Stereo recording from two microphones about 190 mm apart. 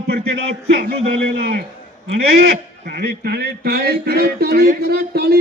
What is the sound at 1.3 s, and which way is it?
A man's voice, 55° right (ahead or behind).